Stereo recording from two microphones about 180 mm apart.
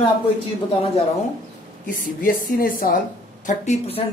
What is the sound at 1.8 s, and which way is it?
A woman's voice, 50° left (ahead or behind).